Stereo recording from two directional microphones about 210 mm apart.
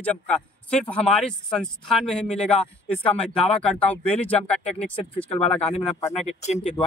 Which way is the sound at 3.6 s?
5° left (ahead or behind).